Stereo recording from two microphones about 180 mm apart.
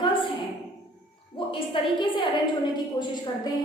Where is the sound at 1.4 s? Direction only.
30° left (ahead or behind).